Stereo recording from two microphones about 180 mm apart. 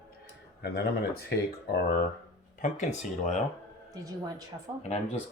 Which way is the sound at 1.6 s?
65° left (ahead or behind).